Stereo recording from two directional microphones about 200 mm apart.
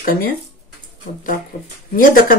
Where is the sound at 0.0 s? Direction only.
45° left (ahead or behind).